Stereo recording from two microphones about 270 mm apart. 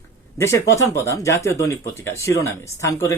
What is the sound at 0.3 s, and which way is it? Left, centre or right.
Speech, centre.